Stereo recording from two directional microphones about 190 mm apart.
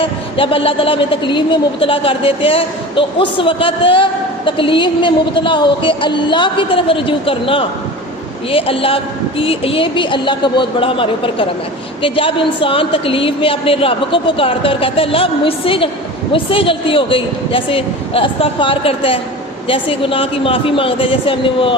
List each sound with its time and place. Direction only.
0.0 s a woman's voice: 30° left (ahead or behind)